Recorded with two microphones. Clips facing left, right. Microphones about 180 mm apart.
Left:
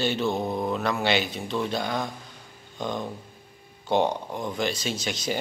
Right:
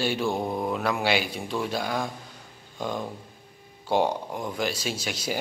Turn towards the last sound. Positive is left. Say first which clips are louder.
# left 1 dB
turn(degrees=-5)  # may be behind; listen again after turning